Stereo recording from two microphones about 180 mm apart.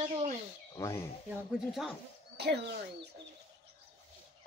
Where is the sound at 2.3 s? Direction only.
70° right (ahead or behind).